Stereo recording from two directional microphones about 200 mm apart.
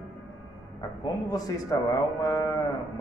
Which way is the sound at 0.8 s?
20° left (ahead or behind).